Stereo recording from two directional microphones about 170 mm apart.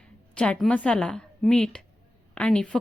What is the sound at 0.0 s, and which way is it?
A woman's voice, 5° left (ahead or behind).